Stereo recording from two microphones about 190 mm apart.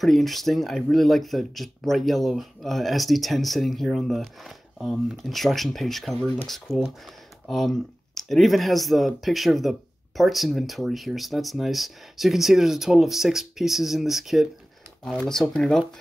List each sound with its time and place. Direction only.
0.0 s speech: centre (ahead or behind)